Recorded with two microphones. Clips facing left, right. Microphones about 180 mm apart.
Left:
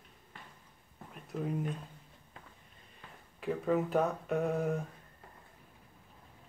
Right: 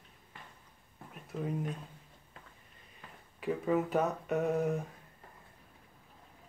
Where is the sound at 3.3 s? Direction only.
Centre (ahead or behind).